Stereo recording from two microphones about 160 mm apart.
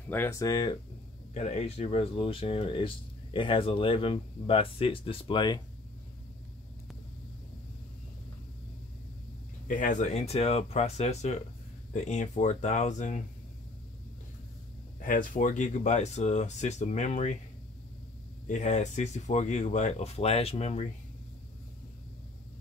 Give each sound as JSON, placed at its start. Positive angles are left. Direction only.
{"t": 0.1, "sound": "speech", "side_deg": 15}
{"t": 1.3, "sound": "speech", "side_deg": 45}
{"t": 9.7, "sound": "speech", "side_deg": 55}
{"t": 15.0, "sound": "speech", "side_deg": 55}
{"t": 18.5, "sound": "speech", "side_deg": 45}